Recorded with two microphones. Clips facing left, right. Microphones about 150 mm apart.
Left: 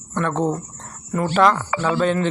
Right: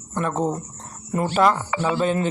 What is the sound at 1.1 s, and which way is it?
Speech, 20° right (ahead or behind).